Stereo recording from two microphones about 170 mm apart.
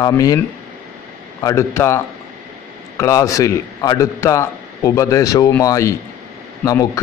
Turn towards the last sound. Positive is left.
turn(degrees=20)  # may be behind; listen again after turning